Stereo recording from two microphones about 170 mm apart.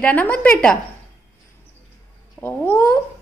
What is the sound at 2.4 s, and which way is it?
Cat, 10° left (ahead or behind).